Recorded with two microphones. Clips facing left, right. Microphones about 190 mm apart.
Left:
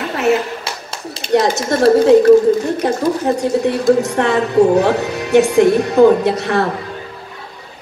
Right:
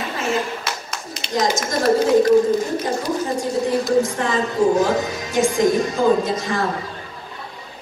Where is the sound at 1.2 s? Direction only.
65° left (ahead or behind).